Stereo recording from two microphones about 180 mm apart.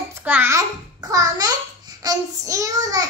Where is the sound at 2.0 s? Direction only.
20° right (ahead or behind).